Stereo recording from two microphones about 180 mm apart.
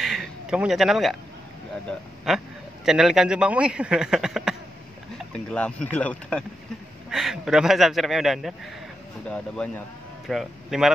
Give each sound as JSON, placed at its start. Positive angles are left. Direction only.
{"t": 0.0, "sound": "a sound", "side_deg": 0}
{"t": 1.9, "sound": "a man's voice", "side_deg": 0}
{"t": 9.6, "sound": "a man's voice", "side_deg": 5}